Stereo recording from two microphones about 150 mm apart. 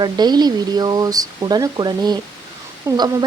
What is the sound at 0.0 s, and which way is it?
Speech, 30° right (ahead or behind).